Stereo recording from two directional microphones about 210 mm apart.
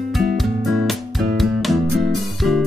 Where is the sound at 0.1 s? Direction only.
Centre (ahead or behind).